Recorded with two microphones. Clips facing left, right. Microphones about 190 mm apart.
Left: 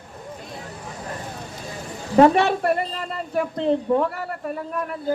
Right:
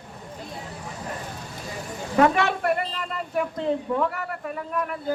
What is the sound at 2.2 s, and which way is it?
A woman's voice, 30° left (ahead or behind).